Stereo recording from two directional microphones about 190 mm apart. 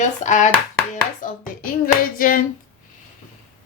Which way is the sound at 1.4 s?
45° left (ahead or behind).